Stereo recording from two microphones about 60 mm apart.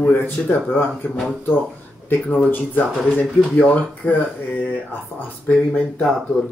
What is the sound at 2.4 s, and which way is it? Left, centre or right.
Speech, left.